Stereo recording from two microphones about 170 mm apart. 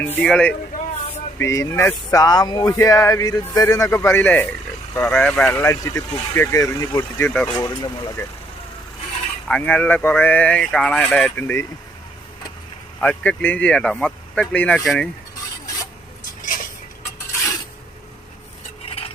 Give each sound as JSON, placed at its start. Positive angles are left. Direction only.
{"t": 0.0, "sound": "speech", "side_deg": 10}
{"t": 0.7, "sound": "a sound", "side_deg": 55}
{"t": 1.4, "sound": "speech", "side_deg": 15}
{"t": 7.5, "sound": "speech", "side_deg": 25}
{"t": 9.5, "sound": "speech", "side_deg": 10}
{"t": 13.0, "sound": "speech", "side_deg": 10}
{"t": 16.4, "sound": "a sound", "side_deg": 50}